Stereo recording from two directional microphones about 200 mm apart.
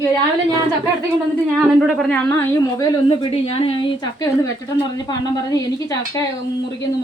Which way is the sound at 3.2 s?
30° left (ahead or behind).